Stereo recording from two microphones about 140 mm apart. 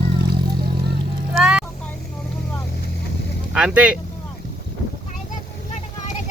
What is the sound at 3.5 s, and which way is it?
Speech, 5° right (ahead or behind).